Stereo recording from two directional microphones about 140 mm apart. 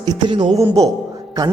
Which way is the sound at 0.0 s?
30° right (ahead or behind).